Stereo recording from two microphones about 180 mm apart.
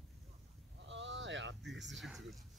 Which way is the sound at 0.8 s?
90° right.